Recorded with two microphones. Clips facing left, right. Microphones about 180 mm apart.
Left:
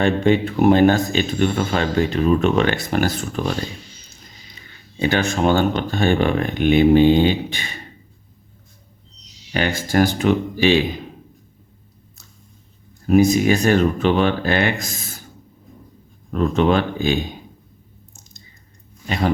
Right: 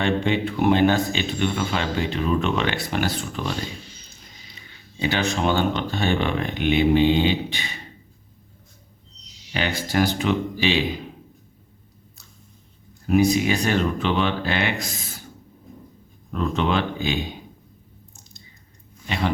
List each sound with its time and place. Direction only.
0.0 s speech: 45° left (ahead or behind)
4.9 s speech: 50° left (ahead or behind)
9.5 s speech: 50° left (ahead or behind)
13.1 s speech: 45° left (ahead or behind)
16.3 s speech: 45° left (ahead or behind)
19.0 s speech: 45° left (ahead or behind)